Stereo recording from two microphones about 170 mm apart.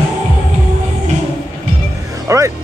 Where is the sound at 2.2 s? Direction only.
15° right (ahead or behind).